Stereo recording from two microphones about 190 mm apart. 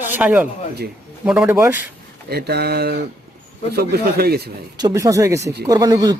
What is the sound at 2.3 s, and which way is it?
Speech, 55° right (ahead or behind).